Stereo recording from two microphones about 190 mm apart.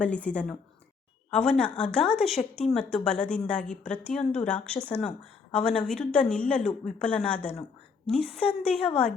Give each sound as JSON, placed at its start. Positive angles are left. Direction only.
{"t": 0.0, "sound": "a woman's voice", "side_deg": 5}